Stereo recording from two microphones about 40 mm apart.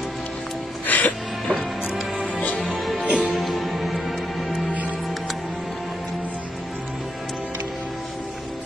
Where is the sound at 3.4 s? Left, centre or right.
Centre.